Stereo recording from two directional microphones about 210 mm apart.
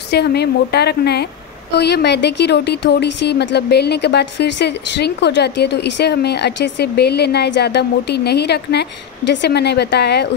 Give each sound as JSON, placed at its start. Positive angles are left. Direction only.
{"t": 0.1, "sound": "speech", "side_deg": 50}